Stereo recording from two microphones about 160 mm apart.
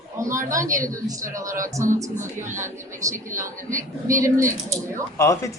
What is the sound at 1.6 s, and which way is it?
Speech, 50° right (ahead or behind).